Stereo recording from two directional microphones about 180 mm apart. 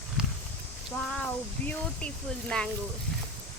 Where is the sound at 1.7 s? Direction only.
5° left (ahead or behind).